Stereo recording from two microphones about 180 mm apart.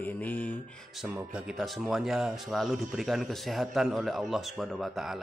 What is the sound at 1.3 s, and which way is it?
Speech, centre (ahead or behind).